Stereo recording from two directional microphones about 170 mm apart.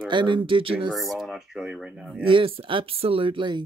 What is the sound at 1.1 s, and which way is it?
Speech, centre (ahead or behind).